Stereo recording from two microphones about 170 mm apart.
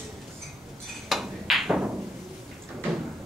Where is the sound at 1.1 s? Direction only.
Centre (ahead or behind).